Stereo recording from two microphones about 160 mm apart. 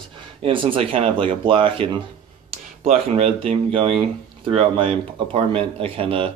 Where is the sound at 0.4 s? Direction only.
30° right (ahead or behind).